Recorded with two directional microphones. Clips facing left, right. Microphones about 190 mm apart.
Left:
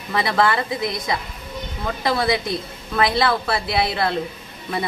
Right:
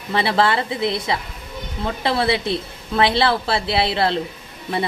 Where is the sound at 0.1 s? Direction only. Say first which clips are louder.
Right 1 dB; 30° right (ahead or behind).